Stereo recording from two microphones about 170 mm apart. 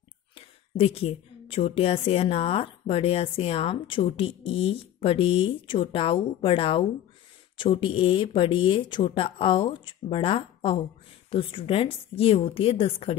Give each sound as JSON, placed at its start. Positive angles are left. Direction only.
{"t": 0.4, "sound": "a woman's voice", "side_deg": 35}